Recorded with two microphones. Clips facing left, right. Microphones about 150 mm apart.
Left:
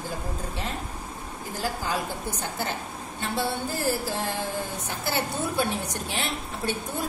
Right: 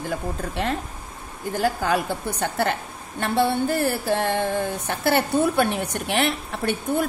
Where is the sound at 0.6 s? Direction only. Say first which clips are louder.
Right 7 dB; 65° right (ahead or behind).